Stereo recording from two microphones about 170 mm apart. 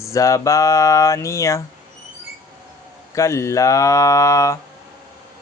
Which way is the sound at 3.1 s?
15° left (ahead or behind).